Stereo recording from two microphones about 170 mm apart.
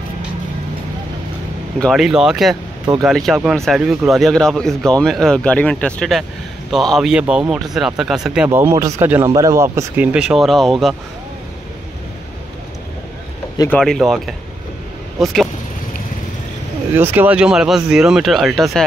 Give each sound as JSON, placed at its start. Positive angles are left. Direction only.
{"t": 1.8, "sound": "speech", "side_deg": 0}
{"t": 8.5, "sound": "speech", "side_deg": -15}
{"t": 10.1, "sound": "speech", "side_deg": -5}
{"t": 13.7, "sound": "speech", "side_deg": 5}
{"t": 16.9, "sound": "speech", "side_deg": -10}